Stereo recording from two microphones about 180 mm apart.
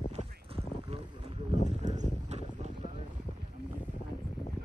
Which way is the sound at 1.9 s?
40° right (ahead or behind).